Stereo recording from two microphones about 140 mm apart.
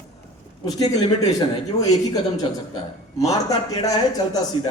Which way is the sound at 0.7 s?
25° left (ahead or behind).